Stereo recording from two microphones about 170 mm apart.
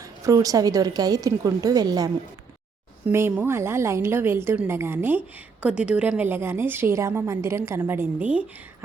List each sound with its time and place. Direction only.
0.3 s a woman's voice: 20° right (ahead or behind)
3.1 s a woman's voice: 15° right (ahead or behind)